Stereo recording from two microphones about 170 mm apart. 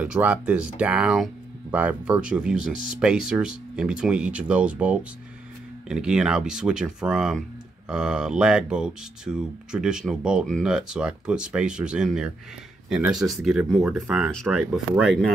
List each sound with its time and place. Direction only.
0.0 s speech: 10° right (ahead or behind)